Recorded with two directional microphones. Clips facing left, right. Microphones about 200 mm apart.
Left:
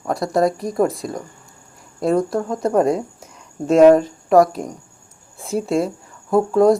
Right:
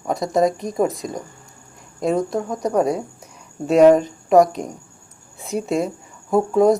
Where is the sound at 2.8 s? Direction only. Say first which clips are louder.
Left 2 dB; 10° right (ahead or behind).